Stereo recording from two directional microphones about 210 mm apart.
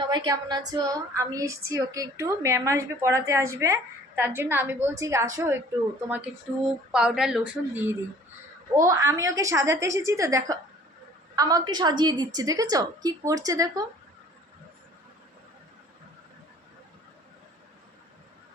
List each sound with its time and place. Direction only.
0.1 s a woman's voice: 20° right (ahead or behind)